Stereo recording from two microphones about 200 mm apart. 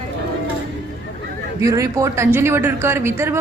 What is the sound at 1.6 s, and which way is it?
Speech, 15° right (ahead or behind).